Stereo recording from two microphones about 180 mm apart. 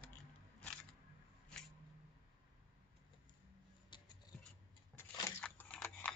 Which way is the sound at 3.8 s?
25° left (ahead or behind).